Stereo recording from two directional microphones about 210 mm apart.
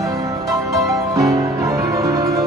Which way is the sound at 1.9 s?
15° right (ahead or behind).